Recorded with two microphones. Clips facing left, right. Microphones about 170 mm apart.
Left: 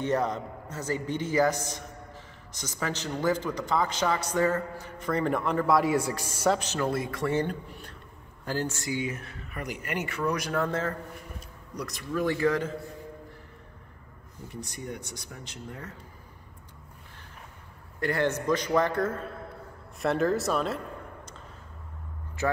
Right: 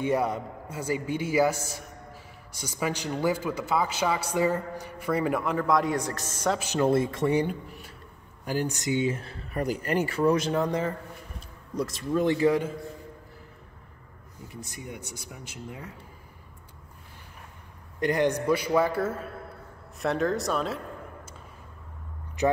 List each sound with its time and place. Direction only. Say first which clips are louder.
0.0 s a man's voice: right 1 dB; 10° right (ahead or behind); by 6.6 s 10° left (ahead or behind)
6.8 s speech: right 5 dB; 25° right (ahead or behind)
11.3 s a man's voice: right 9 dB; 25° right (ahead or behind)
14.5 s a man's voice: left 2 dB; centre (ahead or behind)
18.0 s a man's voice: right 3 dB; 15° right (ahead or behind); by 20.8 s centre (ahead or behind)
22.4 s speech: right 4 dB; 20° right (ahead or behind)